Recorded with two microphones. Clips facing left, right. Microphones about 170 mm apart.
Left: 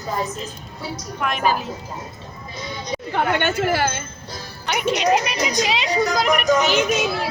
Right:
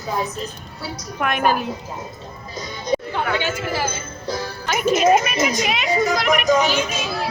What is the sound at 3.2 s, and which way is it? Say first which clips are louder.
Speech: left 3 dB; 60° left (ahead or behind).